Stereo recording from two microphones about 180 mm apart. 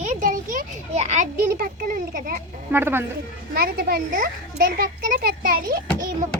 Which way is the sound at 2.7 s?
10° right (ahead or behind).